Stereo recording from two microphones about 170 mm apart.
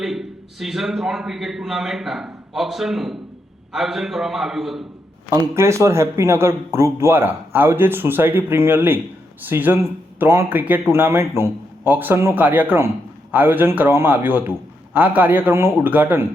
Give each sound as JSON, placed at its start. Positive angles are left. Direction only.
{"t": 0.0, "sound": "a man's voice", "side_deg": 0}
{"t": 5.3, "sound": "a man's voice", "side_deg": -20}